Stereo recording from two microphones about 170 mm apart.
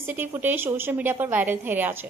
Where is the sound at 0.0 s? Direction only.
15° right (ahead or behind).